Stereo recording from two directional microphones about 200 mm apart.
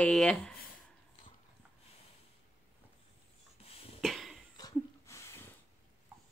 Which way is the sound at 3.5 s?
30° left (ahead or behind).